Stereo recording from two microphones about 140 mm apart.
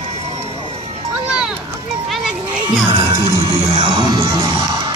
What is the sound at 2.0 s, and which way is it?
Music, 5° right (ahead or behind).